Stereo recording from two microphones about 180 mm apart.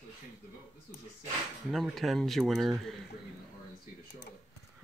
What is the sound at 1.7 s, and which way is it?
Speech, centre (ahead or behind).